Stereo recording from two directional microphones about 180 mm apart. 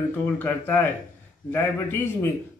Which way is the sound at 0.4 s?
10° left (ahead or behind).